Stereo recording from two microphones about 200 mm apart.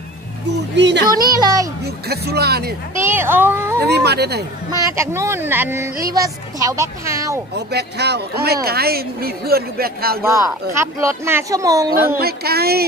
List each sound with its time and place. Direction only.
0.7 s a man's voice: 60° right (ahead or behind)
1.1 s music: 20° right (ahead or behind)
2.0 s speech: 55° right (ahead or behind)
3.0 s speech: 10° right (ahead or behind)
3.8 s a man's voice: 55° right (ahead or behind)
4.6 s speech: 15° right (ahead or behind)
7.5 s a man's voice: 55° right (ahead or behind)
10.2 s speech: 15° right (ahead or behind)
12.2 s speech: 50° right (ahead or behind)